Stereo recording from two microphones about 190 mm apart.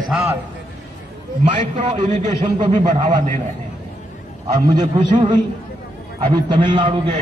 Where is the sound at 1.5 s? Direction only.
40° right (ahead or behind).